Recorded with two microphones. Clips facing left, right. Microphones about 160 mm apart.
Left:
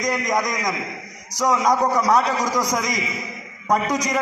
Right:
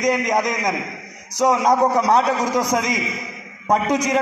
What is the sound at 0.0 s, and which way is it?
A man's voice, 30° right (ahead or behind).